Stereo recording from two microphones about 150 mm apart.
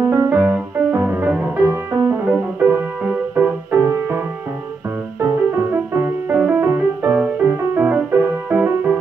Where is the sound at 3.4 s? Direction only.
10° right (ahead or behind).